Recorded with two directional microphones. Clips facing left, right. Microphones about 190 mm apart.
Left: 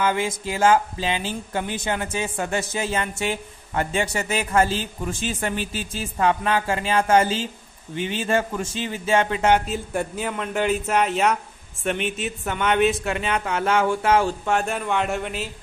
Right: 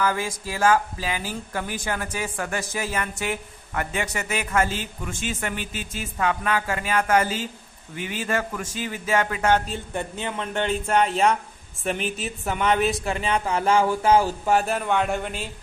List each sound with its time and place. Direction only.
0.0 s speech: 25° left (ahead or behind)
9.7 s speech: 5° left (ahead or behind)